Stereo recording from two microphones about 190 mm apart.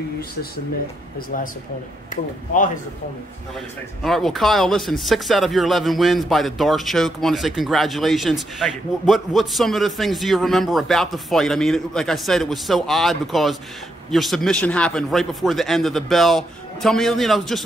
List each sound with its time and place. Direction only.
4.0 s speech: centre (ahead or behind)